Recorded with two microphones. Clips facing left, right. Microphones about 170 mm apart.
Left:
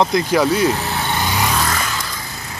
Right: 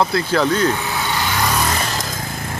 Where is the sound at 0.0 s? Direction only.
15° left (ahead or behind).